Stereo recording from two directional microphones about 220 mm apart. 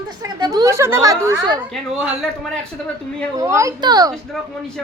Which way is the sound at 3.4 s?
15° right (ahead or behind).